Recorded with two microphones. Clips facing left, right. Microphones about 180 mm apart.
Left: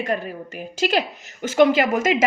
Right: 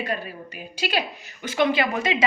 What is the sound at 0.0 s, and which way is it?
A woman's voice, 45° left (ahead or behind).